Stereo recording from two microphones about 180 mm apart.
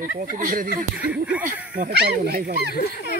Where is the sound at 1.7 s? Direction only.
60° right (ahead or behind).